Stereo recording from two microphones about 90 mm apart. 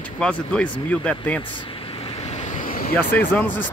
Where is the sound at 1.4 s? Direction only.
65° left (ahead or behind); by 2.1 s 90° left.